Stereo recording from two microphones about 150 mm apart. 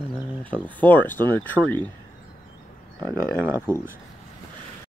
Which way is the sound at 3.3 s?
15° right (ahead or behind).